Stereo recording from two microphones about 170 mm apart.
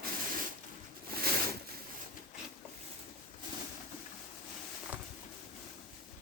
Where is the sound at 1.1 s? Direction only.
65° right (ahead or behind).